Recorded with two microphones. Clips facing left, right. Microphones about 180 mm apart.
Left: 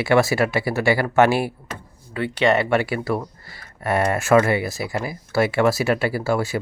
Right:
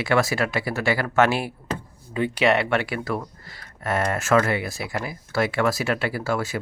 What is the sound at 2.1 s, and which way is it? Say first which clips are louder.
Speech: left 1 dB; 15° right (ahead or behind).